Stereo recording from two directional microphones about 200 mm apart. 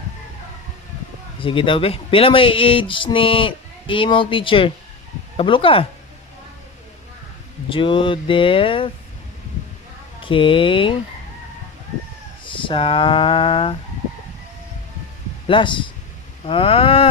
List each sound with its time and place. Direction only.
1.4 s speech: 25° left (ahead or behind)
7.7 s speech: 25° left (ahead or behind)
10.2 s speech: 25° left (ahead or behind)
12.5 s speech: 25° left (ahead or behind)
15.4 s speech: 25° left (ahead or behind)